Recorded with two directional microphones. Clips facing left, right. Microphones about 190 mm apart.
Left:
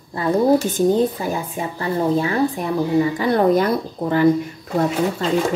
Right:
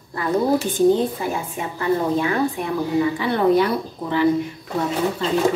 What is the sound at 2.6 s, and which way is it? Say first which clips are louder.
A woman's voice: left 2 dB; 40° left (ahead or behind).